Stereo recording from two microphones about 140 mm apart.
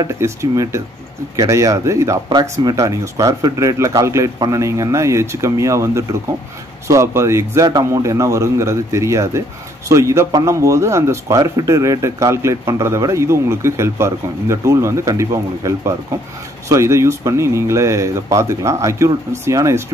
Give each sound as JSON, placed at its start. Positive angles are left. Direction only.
{"t": 0.0, "sound": "speech", "side_deg": -20}